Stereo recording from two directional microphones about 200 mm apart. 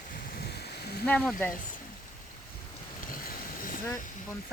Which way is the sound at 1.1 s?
5° left (ahead or behind).